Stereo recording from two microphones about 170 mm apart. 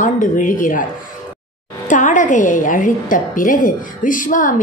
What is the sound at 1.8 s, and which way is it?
A woman's voice, 50° left (ahead or behind).